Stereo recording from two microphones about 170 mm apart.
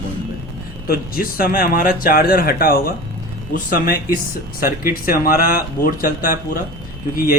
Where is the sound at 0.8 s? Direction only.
60° left (ahead or behind).